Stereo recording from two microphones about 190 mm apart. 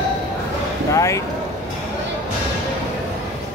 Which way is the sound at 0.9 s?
15° left (ahead or behind).